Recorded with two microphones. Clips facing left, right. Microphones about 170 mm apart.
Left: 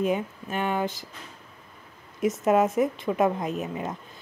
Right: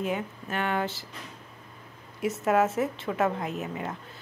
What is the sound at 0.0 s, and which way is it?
A woman's voice, 15° left (ahead or behind).